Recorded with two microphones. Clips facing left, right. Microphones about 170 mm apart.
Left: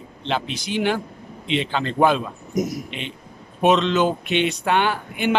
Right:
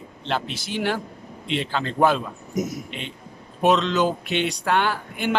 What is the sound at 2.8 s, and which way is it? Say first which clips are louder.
Speech: left 2 dB; 75° left (ahead or behind).